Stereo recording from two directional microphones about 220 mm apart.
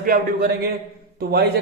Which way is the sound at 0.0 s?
40° right (ahead or behind).